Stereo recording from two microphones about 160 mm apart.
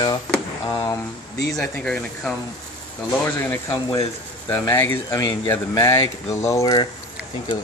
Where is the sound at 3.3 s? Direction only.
15° left (ahead or behind).